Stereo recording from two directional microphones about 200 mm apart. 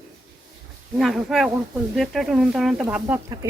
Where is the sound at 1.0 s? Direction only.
Centre (ahead or behind).